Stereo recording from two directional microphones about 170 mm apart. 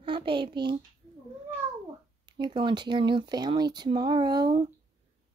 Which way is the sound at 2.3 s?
30° right (ahead or behind).